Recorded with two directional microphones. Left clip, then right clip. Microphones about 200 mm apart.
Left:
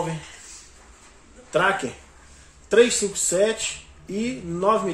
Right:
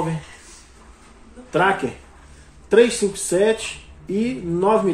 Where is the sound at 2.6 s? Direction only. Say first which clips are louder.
Right 2 dB; centre (ahead or behind).